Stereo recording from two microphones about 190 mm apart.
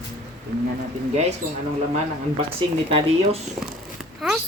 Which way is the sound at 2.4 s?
30° right (ahead or behind).